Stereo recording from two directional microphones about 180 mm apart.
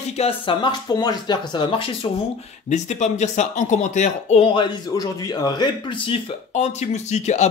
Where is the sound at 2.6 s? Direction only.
40° left (ahead or behind).